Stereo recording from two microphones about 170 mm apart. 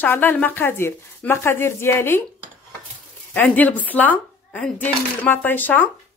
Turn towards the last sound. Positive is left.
turn(degrees=10)  # may be behind; listen again after turning